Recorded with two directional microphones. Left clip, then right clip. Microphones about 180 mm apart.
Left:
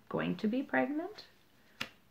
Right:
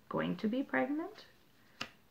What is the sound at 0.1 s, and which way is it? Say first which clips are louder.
Speech: left 1 dB; 35° left (ahead or behind).